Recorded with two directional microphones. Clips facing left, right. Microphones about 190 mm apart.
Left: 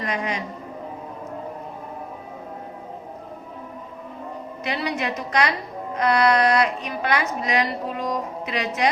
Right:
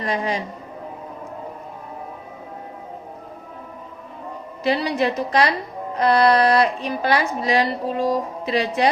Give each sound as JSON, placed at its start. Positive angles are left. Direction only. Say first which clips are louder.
{"t": 0.0, "sound": "a woman's voice", "louder": "right 3 dB", "side_deg": -35}
{"t": 4.6, "sound": "a woman's voice", "louder": "right 6 dB", "side_deg": -30}